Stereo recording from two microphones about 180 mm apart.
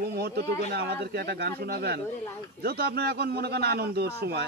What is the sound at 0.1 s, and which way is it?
A man's voice, 65° right (ahead or behind).